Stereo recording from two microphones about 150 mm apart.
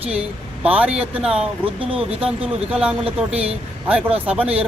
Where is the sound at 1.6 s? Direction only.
40° right (ahead or behind).